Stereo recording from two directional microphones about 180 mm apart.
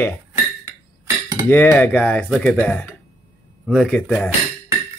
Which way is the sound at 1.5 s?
10° left (ahead or behind).